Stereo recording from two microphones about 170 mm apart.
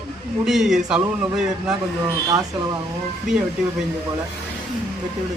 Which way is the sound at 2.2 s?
20° right (ahead or behind).